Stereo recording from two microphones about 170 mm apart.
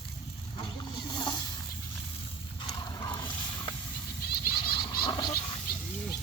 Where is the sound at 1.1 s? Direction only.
25° left (ahead or behind).